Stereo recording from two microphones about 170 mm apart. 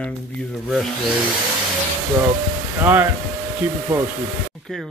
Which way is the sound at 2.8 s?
10° right (ahead or behind).